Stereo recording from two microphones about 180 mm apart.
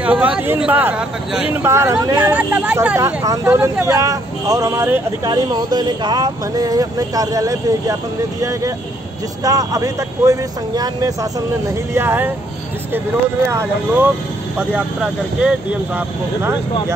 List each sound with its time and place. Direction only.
0.0 s speech: 5° right (ahead or behind)
13.5 s speech: 10° right (ahead or behind)